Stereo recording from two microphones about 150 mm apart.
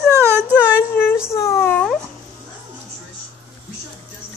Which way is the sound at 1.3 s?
20° left (ahead or behind).